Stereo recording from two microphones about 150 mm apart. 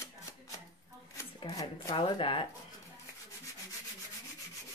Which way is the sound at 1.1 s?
25° left (ahead or behind).